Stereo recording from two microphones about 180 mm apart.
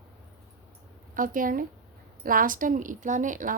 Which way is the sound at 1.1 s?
50° right (ahead or behind).